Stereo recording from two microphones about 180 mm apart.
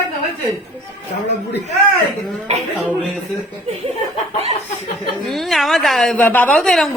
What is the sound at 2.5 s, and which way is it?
Speech, 35° right (ahead or behind).